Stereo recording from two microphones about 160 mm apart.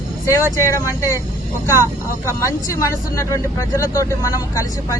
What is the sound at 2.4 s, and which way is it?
Speech, 20° left (ahead or behind).